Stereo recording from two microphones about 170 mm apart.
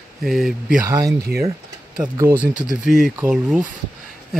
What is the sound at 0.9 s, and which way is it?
Speech, 20° right (ahead or behind).